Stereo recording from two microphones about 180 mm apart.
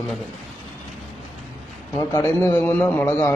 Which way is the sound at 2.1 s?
10° left (ahead or behind).